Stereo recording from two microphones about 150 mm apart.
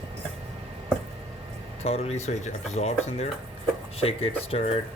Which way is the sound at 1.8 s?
45° left (ahead or behind).